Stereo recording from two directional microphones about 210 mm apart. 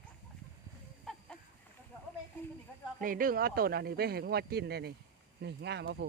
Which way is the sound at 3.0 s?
40° right (ahead or behind).